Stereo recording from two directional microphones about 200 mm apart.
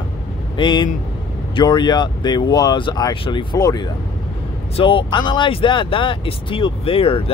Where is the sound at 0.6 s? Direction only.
25° left (ahead or behind).